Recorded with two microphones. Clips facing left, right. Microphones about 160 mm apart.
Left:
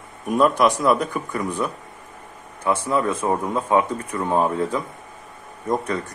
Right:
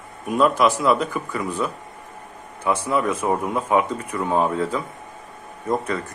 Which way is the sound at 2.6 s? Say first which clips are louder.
Even; 10° right (ahead or behind).